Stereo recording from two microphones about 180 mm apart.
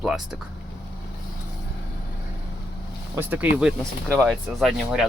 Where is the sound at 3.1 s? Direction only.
10° right (ahead or behind).